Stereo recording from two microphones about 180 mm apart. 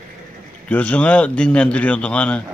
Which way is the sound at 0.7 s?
5° left (ahead or behind).